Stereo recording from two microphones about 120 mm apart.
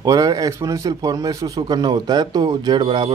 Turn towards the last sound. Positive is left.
turn(degrees=-40)  # may be behind; listen again after turning